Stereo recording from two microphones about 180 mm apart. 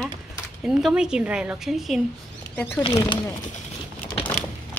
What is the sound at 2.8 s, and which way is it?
Speech, 25° left (ahead or behind).